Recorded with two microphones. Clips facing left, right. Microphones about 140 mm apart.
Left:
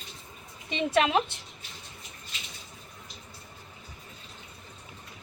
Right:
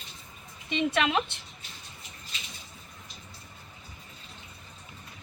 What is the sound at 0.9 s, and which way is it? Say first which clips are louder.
Speech: left 5 dB; 35° left (ahead or behind).